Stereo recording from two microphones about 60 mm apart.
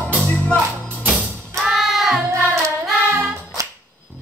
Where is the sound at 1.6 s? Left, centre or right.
Centre.